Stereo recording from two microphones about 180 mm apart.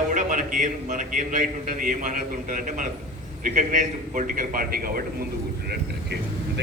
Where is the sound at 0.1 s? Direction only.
45° right (ahead or behind).